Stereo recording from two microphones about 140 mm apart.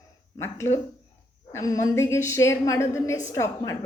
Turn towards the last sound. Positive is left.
turn(degrees=20)  # may be behind; listen again after turning